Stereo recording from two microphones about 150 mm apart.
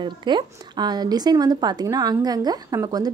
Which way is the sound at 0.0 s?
30° right (ahead or behind).